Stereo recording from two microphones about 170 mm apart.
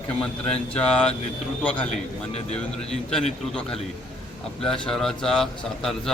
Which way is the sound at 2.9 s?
5° left (ahead or behind).